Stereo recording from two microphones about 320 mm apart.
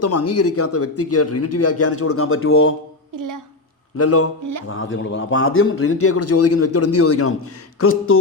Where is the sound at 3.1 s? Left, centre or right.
Right.